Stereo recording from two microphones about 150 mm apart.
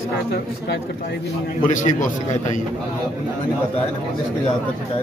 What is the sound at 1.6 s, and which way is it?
Speech, 60° left (ahead or behind).